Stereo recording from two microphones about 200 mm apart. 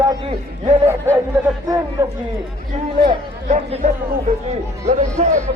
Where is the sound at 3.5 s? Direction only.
35° right (ahead or behind).